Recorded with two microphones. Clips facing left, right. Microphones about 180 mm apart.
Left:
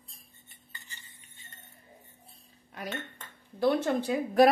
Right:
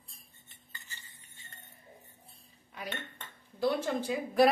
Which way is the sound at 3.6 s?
55° left (ahead or behind).